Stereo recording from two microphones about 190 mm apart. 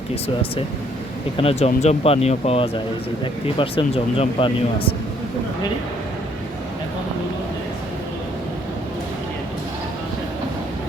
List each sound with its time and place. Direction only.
1.4 s a man's voice: 30° left (ahead or behind)